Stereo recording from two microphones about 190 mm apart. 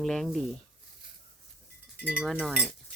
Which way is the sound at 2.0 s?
5° right (ahead or behind).